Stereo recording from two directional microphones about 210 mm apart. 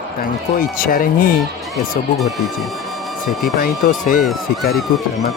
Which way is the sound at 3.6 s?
45° left (ahead or behind).